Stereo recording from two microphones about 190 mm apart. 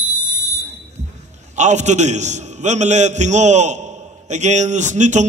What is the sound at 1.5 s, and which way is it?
A man's voice, 40° right (ahead or behind).